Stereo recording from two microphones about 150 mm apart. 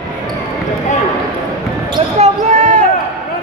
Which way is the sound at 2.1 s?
45° right (ahead or behind).